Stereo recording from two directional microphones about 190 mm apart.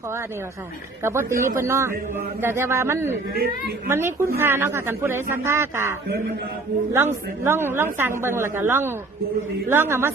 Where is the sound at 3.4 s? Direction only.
55° right (ahead or behind).